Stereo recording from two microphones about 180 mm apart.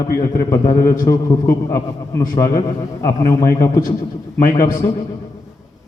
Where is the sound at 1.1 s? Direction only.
20° left (ahead or behind).